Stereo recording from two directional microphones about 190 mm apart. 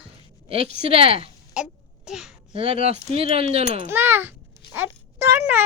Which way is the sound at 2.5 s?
30° right (ahead or behind).